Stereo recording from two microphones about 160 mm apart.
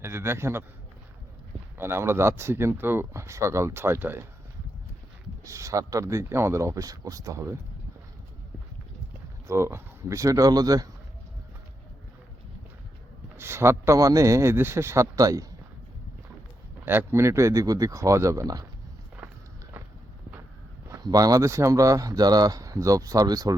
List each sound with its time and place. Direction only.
0.0 s speech: 15° right (ahead or behind)
1.8 s speech: 15° right (ahead or behind)
5.5 s speech: 20° right (ahead or behind)
9.5 s speech: 15° right (ahead or behind)
13.3 s speech: 15° right (ahead or behind)
16.8 s speech: 15° right (ahead or behind)
20.8 s speech: 20° right (ahead or behind)